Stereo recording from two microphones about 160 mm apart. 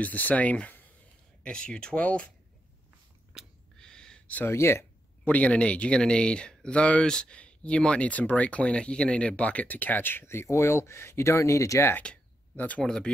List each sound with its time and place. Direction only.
0.0 s speech: 10° left (ahead or behind)
3.3 s speech: 5° left (ahead or behind)